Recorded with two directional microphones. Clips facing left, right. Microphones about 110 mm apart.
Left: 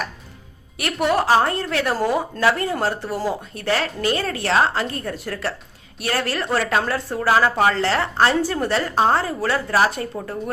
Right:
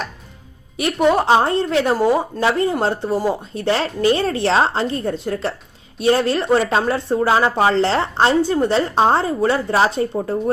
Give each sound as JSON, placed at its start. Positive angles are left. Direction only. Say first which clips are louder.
{"t": 0.8, "sound": "speech", "louder": "right 4 dB", "side_deg": -20}